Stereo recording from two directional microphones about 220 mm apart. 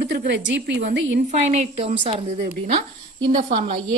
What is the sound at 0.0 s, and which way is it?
A woman's voice, 50° right (ahead or behind).